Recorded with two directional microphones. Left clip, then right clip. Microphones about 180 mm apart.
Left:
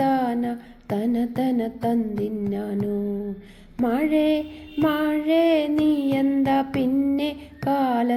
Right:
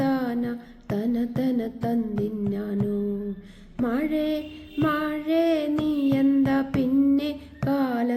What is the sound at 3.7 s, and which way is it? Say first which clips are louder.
Female singing: left 4 dB; 15° left (ahead or behind).